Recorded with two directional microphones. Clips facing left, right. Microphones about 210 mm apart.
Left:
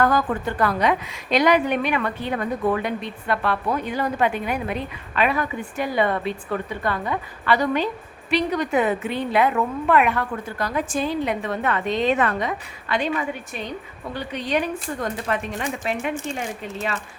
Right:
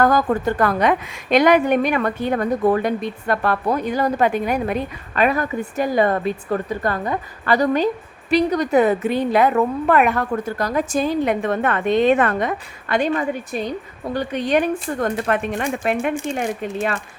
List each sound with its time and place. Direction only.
0.0 s a woman's voice: 40° right (ahead or behind)